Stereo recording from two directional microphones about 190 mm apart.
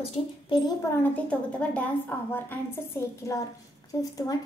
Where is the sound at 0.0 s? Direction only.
20° left (ahead or behind).